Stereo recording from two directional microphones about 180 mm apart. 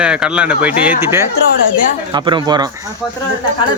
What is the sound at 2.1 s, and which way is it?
Speech, 25° right (ahead or behind).